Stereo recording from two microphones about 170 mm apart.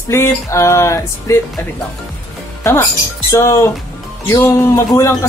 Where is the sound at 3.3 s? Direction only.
15° left (ahead or behind).